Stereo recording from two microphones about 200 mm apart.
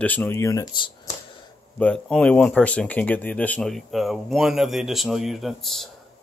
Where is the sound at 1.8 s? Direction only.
5° left (ahead or behind).